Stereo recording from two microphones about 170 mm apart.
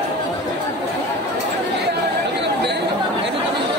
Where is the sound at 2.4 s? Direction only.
80° right.